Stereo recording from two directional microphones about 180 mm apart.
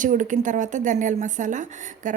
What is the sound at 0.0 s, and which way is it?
Speech, 45° right (ahead or behind).